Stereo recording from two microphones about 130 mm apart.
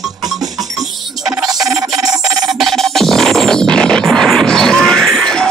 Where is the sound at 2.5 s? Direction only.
Centre (ahead or behind).